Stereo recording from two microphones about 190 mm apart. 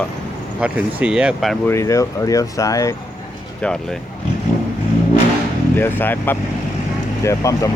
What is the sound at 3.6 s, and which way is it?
Speech, 5° left (ahead or behind).